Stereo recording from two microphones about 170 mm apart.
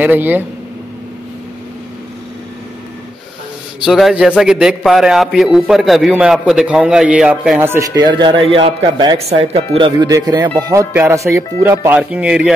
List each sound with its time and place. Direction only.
0.0 s speech: 10° right (ahead or behind)
3.8 s a man's voice: centre (ahead or behind)
8.0 s speech: 25° right (ahead or behind)
9.2 s speech: 35° right (ahead or behind); by 12.5 s 5° right (ahead or behind)